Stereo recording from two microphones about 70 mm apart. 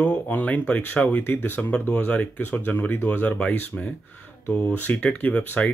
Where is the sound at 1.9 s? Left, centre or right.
Centre.